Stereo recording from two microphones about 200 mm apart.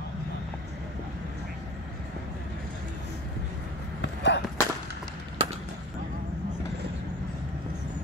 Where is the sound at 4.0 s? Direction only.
60° left (ahead or behind).